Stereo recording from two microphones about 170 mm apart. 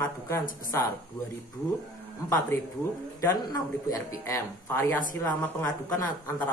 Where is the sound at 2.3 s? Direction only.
20° left (ahead or behind).